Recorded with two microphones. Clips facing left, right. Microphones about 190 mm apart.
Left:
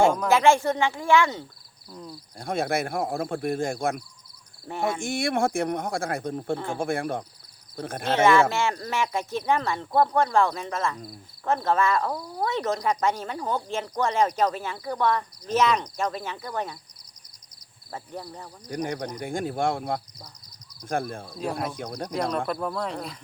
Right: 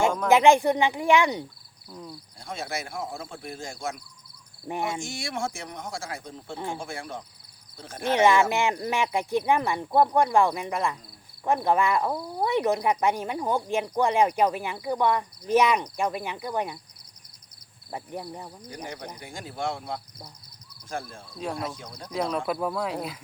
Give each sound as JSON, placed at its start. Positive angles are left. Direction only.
{"t": 0.3, "sound": "speech", "side_deg": -20}
{"t": 1.9, "sound": "speech", "side_deg": 0}
{"t": 2.4, "sound": "speech", "side_deg": 55}
{"t": 4.6, "sound": "speech", "side_deg": -15}
{"t": 4.9, "sound": "speech", "side_deg": 55}
{"t": 8.1, "sound": "speech", "side_deg": -15}
{"t": 17.9, "sound": "speech", "side_deg": -15}
{"t": 18.7, "sound": "speech", "side_deg": 60}
{"t": 22.1, "sound": "speech", "side_deg": -5}